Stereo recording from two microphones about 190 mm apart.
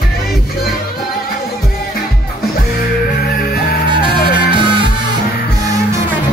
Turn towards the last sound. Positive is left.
turn(degrees=-25)  # may be behind; listen again after turning